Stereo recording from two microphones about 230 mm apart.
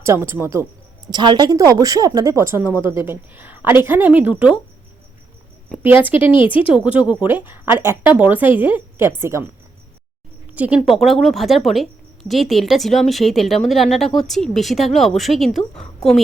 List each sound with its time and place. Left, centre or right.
0.0 s speech: centre
5.8 s speech: centre
6.1 s speech: left
6.7 s speech: centre
10.5 s speech: centre